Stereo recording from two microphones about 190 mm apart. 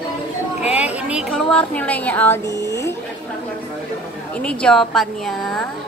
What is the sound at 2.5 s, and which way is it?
Speech, 15° right (ahead or behind).